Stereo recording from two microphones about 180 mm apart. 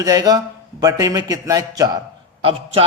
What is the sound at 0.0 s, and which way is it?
A man's voice, 20° right (ahead or behind).